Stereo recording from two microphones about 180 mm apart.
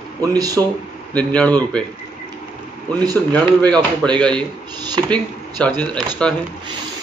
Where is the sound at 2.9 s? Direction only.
20° right (ahead or behind).